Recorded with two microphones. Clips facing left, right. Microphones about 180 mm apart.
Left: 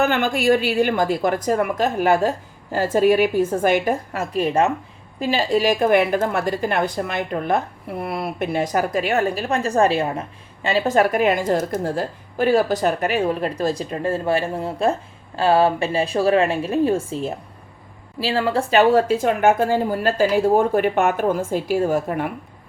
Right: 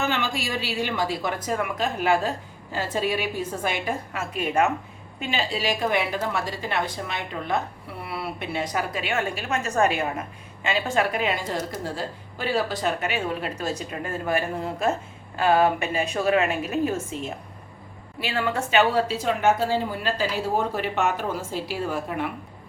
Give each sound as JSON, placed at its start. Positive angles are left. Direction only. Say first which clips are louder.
{"t": 0.0, "sound": "a woman's voice", "louder": "left 8 dB", "side_deg": 55}